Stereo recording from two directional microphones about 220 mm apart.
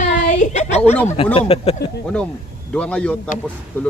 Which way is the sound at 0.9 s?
10° left (ahead or behind).